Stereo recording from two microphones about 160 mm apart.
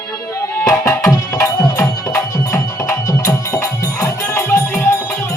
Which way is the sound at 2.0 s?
20° left (ahead or behind).